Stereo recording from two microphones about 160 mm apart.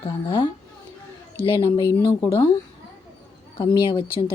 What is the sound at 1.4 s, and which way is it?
Speech, 30° left (ahead or behind).